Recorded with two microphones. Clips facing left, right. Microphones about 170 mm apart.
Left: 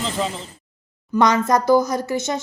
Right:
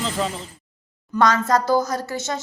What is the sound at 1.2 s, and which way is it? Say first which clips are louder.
Speech: left 1 dB; 20° left (ahead or behind).